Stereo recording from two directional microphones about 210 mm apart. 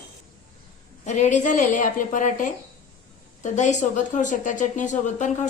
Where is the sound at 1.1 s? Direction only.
35° left (ahead or behind).